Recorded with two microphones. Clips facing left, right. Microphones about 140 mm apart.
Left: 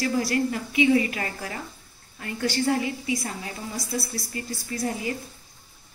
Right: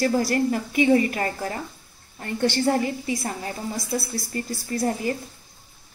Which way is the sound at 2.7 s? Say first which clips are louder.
Right 2 dB; 45° right (ahead or behind).